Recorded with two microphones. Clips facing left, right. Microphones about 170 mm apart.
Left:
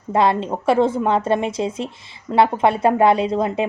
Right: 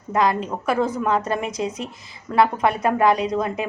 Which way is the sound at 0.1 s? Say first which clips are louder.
Left 3 dB; 30° left (ahead or behind).